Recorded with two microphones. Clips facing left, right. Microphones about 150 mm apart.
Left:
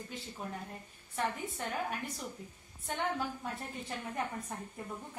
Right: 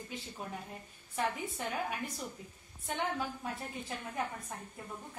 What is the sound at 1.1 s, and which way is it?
Speech, 5° right (ahead or behind).